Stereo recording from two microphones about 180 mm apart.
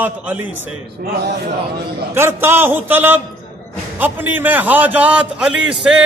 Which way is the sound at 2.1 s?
15° right (ahead or behind).